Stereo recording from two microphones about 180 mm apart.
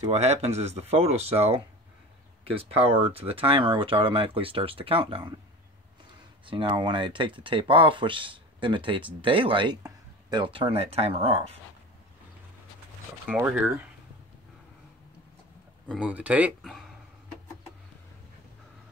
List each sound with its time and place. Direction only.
0.0 s speech: 35° right (ahead or behind)
2.5 s speech: 35° right (ahead or behind)
6.4 s speech: 30° right (ahead or behind)
13.3 s speech: 10° right (ahead or behind)
15.9 s speech: 5° right (ahead or behind)